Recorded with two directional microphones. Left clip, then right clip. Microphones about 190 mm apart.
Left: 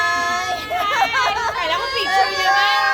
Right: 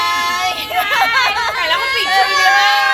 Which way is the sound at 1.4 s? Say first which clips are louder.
Right 4 dB; 10° right (ahead or behind).